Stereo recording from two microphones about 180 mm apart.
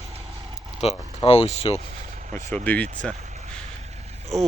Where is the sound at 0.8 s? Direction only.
35° left (ahead or behind).